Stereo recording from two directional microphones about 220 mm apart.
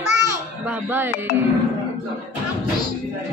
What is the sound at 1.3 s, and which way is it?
Speech, 50° left (ahead or behind).